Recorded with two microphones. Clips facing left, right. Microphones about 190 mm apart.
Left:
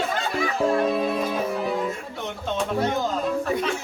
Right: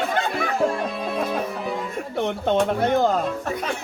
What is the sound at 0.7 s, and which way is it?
Music, centre (ahead or behind).